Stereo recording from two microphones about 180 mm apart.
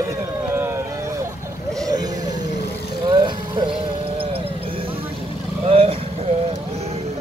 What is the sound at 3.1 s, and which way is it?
Music, 25° right (ahead or behind).